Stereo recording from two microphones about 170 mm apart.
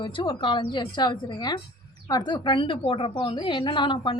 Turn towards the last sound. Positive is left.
turn(degrees=30)  # may be behind; listen again after turning